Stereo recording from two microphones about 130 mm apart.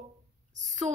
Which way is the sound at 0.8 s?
50° right (ahead or behind).